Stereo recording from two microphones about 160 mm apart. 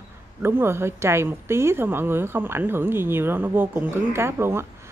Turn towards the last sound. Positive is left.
turn(degrees=-15)  # may be behind; listen again after turning